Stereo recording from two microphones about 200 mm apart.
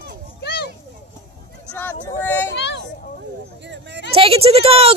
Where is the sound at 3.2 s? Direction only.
60° right (ahead or behind).